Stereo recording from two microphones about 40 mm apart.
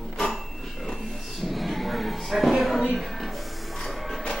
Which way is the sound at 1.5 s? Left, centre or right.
Centre.